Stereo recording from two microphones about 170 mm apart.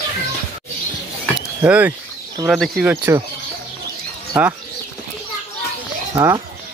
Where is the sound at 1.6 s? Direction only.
10° right (ahead or behind).